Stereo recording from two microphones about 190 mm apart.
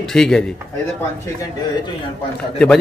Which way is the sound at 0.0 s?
5° left (ahead or behind).